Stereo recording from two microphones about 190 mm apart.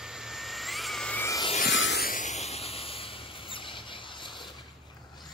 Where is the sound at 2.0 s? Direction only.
45° left (ahead or behind); by 4.5 s 25° left (ahead or behind).